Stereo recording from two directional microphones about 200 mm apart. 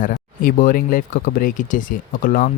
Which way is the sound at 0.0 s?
45° left (ahead or behind).